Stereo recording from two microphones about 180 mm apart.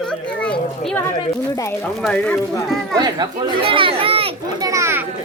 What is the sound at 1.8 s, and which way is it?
Speech, 5° left (ahead or behind).